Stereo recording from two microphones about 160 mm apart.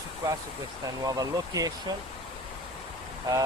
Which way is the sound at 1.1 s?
20° right (ahead or behind).